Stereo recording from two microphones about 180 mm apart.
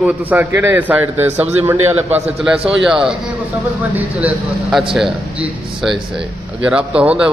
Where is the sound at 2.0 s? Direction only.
35° right (ahead or behind).